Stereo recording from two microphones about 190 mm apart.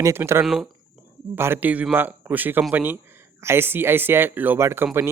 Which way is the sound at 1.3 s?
10° right (ahead or behind).